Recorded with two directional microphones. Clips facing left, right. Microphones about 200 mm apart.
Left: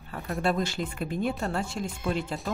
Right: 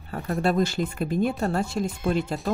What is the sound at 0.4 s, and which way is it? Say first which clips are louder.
Speech: right 4 dB; 40° right (ahead or behind).